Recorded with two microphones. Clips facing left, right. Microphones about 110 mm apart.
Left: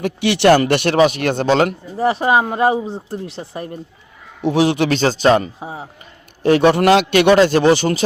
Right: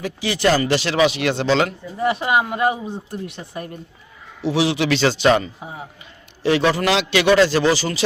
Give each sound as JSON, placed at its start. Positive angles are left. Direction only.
{"t": 0.0, "sound": "speech", "side_deg": 65}
{"t": 0.9, "sound": "speech", "side_deg": 45}
{"t": 4.4, "sound": "a man's voice", "side_deg": 50}
{"t": 6.4, "sound": "a man's voice", "side_deg": 50}